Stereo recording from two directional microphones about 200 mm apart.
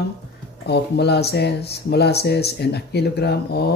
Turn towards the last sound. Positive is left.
turn(degrees=55)  # may be behind; listen again after turning